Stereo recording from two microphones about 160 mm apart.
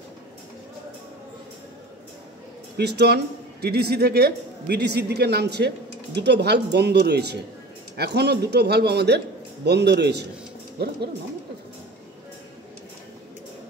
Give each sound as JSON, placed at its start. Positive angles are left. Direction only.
{"t": 2.8, "sound": "speech", "side_deg": -90}